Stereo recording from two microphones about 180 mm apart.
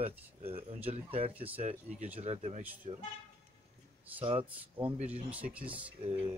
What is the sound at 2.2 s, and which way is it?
Speech, 35° right (ahead or behind).